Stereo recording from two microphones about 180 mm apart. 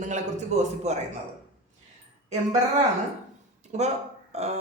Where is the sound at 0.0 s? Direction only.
40° right (ahead or behind).